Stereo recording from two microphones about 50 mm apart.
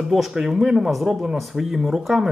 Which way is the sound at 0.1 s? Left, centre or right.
Centre.